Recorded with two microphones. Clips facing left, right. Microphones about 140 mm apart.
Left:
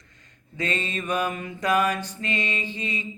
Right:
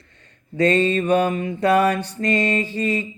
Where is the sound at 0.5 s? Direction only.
35° right (ahead or behind).